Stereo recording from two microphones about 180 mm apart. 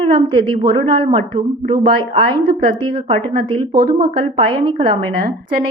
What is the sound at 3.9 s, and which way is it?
A woman's voice, 25° right (ahead or behind).